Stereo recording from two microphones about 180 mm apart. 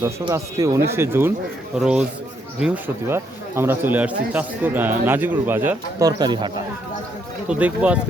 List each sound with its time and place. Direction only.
0.3 s a man's voice: 20° right (ahead or behind)
7.4 s speech: 5° right (ahead or behind)